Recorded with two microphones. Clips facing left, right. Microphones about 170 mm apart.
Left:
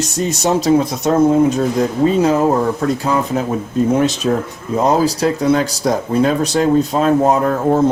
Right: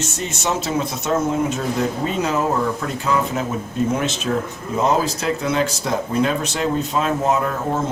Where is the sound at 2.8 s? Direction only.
35° left (ahead or behind).